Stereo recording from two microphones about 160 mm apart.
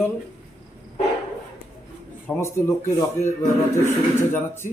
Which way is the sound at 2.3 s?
Centre (ahead or behind).